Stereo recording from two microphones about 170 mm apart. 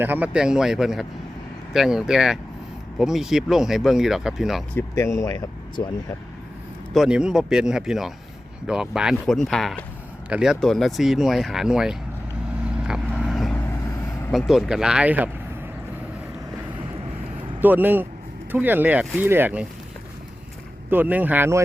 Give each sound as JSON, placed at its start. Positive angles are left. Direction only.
{"t": 0.0, "sound": "speech", "side_deg": -10}
{"t": 4.7, "sound": "speech", "side_deg": 15}
{"t": 6.9, "sound": "speech", "side_deg": -5}
{"t": 12.6, "sound": "vehicle", "side_deg": -5}
{"t": 14.3, "sound": "speech", "side_deg": 0}
{"t": 17.6, "sound": "speech", "side_deg": -10}
{"t": 20.9, "sound": "speech", "side_deg": -10}